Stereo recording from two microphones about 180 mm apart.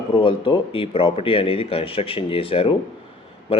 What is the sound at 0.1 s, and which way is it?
Speech, 30° left (ahead or behind).